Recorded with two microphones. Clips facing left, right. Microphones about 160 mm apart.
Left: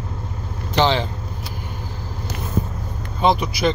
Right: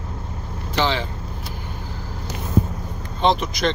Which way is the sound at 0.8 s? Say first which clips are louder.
Left 4 dB; 20° left (ahead or behind).